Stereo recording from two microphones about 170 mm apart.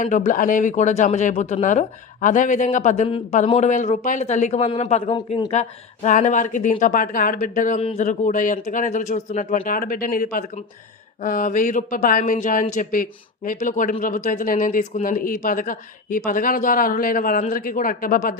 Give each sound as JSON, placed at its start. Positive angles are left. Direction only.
{"t": 0.0, "sound": "speech", "side_deg": 50}
{"t": 7.8, "sound": "speech", "side_deg": 40}